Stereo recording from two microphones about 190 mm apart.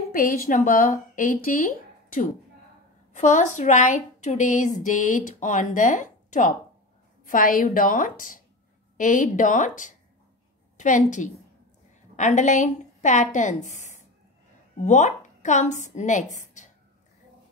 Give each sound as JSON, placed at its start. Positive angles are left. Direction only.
{"t": 0.1, "sound": "a woman's voice", "side_deg": 50}